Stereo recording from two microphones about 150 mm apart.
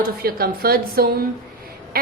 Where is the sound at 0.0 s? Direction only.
85° right.